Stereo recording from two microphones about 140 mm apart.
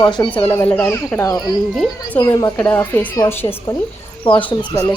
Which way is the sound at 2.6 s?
15° left (ahead or behind).